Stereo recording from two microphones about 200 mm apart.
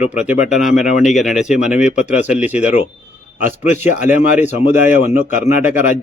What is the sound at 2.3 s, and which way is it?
Speech, 10° right (ahead or behind).